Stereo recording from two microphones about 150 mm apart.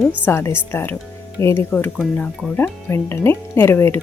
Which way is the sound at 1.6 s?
5° left (ahead or behind).